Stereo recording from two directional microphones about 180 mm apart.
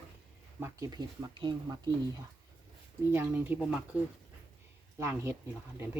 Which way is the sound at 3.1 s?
10° right (ahead or behind).